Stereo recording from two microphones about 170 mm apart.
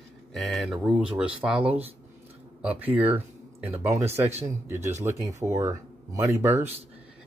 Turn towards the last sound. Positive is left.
turn(degrees=-15)  # may be behind; listen again after turning